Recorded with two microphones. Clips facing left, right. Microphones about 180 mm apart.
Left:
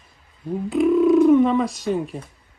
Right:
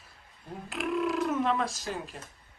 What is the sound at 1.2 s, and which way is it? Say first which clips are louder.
Speech: left 13 dB; centre (ahead or behind).